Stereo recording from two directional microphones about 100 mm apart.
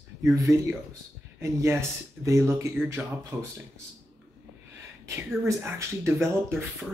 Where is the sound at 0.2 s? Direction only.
30° right (ahead or behind).